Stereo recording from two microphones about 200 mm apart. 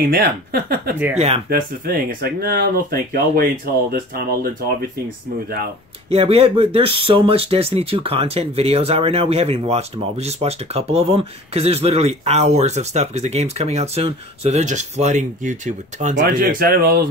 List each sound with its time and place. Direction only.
0.1 s speech: 50° right (ahead or behind)
1.1 s speech: 30° right (ahead or behind)
1.5 s speech: 45° right (ahead or behind)
6.0 s speech: 30° right (ahead or behind); by 16.9 s 50° right (ahead or behind)